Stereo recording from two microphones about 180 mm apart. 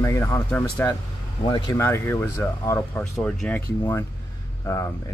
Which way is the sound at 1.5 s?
25° left (ahead or behind).